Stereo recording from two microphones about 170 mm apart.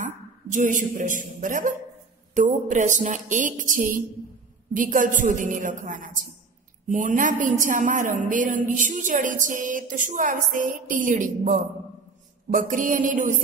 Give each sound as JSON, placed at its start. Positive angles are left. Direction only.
{"t": 0.0, "sound": "a woman's voice", "side_deg": -50}